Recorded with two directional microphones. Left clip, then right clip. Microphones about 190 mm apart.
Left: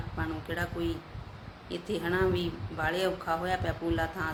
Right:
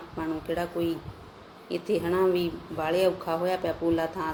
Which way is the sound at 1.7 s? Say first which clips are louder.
Right 5 dB; 10° right (ahead or behind).